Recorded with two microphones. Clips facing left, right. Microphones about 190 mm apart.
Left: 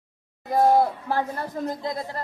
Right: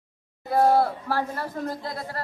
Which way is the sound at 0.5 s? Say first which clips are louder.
Left 1 dB; 15° left (ahead or behind).